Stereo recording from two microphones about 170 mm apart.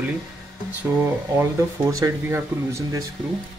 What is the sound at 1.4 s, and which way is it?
Speech, 20° right (ahead or behind).